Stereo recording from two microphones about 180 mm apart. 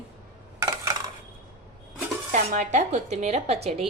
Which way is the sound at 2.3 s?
40° right (ahead or behind).